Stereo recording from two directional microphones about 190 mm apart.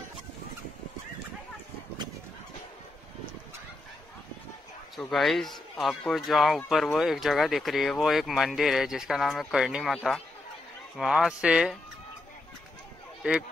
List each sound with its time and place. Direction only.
4.9 s speech: centre (ahead or behind)
13.2 s speech: 5° right (ahead or behind)